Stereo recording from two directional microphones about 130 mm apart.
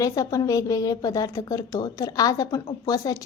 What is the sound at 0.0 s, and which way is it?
A woman's voice, 25° left (ahead or behind).